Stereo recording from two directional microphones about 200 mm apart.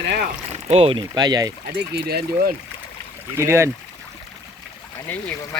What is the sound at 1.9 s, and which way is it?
Speech, 50° right (ahead or behind).